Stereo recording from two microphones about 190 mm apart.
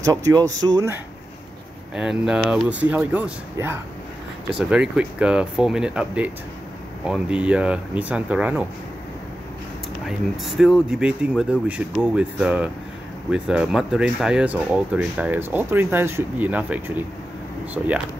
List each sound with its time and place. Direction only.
0.0 s speech: 20° right (ahead or behind)
2.0 s speech: 5° right (ahead or behind)
10.0 s speech: centre (ahead or behind)